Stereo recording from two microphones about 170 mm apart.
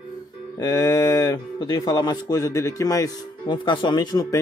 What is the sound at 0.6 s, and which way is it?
Speech, 20° left (ahead or behind).